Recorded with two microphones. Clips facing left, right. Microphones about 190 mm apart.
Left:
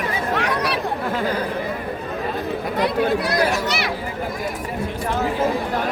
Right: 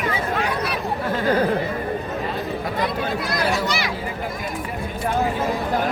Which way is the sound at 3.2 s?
70° left (ahead or behind).